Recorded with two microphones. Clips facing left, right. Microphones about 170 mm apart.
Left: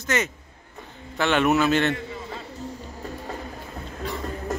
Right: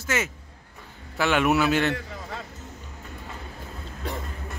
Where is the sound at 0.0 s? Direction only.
5° right (ahead or behind).